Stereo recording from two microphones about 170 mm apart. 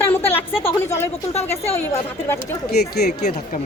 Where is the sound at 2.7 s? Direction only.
70° left (ahead or behind).